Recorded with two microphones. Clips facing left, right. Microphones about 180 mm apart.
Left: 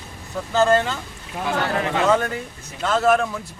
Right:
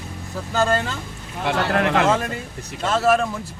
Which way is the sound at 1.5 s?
70° right (ahead or behind).